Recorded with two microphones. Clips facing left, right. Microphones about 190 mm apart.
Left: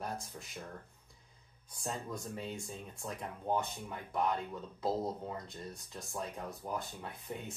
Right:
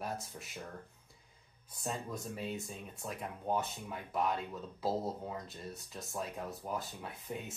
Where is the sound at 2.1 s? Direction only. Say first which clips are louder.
Right 1 dB; 25° right (ahead or behind).